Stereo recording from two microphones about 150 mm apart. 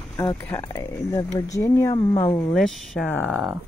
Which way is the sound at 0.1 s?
15° left (ahead or behind).